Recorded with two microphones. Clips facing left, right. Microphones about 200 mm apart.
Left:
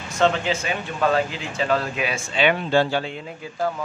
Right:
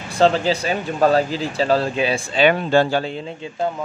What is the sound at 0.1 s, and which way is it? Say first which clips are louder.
Speech: right 4 dB; 35° right (ahead or behind).